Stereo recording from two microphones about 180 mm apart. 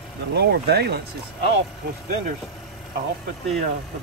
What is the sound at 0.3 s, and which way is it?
Speech, 65° right (ahead or behind).